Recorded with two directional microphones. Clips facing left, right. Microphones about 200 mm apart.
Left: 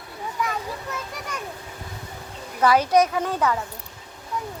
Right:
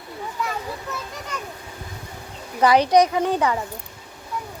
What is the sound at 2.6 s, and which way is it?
A woman's voice, 15° right (ahead or behind).